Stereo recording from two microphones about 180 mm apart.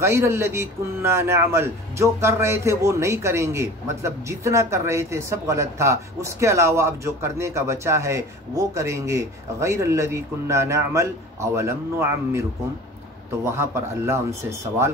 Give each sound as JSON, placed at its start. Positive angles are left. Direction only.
{"t": 0.0, "sound": "a man's voice", "side_deg": -15}